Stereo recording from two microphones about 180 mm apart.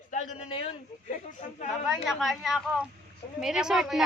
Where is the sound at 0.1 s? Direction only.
45° left (ahead or behind).